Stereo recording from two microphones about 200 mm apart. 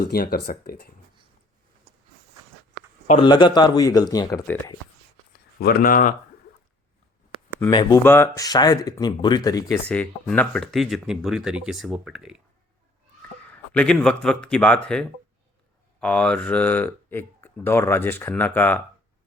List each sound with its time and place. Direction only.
0.1 s speech: 50° left (ahead or behind)
3.1 s speech: 25° left (ahead or behind)
5.5 s speech: 50° left (ahead or behind)
7.7 s speech: 20° left (ahead or behind)
8.0 s speech: 10° left (ahead or behind)
9.8 s speech: 5° left (ahead or behind)
13.5 s speech: 5° left (ahead or behind)